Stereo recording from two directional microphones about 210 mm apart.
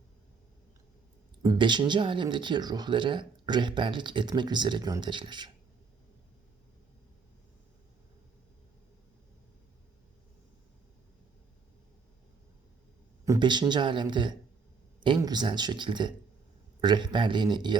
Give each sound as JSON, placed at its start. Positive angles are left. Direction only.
{"t": 1.4, "sound": "speech", "side_deg": -20}
{"t": 13.2, "sound": "speech", "side_deg": -20}